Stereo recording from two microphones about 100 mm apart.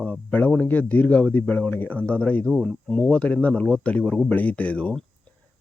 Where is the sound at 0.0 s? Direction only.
15° left (ahead or behind).